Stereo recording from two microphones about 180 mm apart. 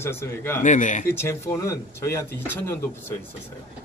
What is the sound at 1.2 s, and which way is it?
A man's voice, 15° left (ahead or behind).